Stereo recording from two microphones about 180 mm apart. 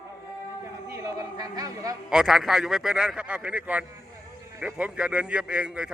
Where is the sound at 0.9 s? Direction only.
20° right (ahead or behind).